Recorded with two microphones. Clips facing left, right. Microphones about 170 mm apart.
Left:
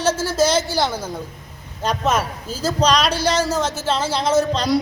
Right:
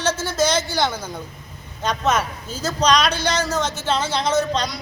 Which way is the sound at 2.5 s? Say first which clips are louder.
Left 2 dB; 30° left (ahead or behind).